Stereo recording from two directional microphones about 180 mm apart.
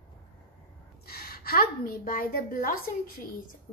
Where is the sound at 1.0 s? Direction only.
60° left (ahead or behind).